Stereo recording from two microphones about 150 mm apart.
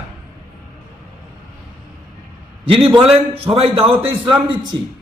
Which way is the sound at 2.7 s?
35° right (ahead or behind).